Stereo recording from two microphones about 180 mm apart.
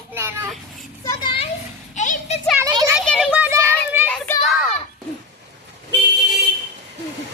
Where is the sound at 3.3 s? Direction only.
10° right (ahead or behind).